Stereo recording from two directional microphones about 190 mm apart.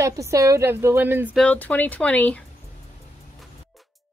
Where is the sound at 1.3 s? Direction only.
5° left (ahead or behind).